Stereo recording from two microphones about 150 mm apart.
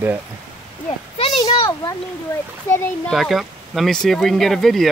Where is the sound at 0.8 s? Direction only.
40° left (ahead or behind).